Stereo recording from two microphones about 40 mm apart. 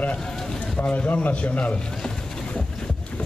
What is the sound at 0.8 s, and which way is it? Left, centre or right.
Speech, left.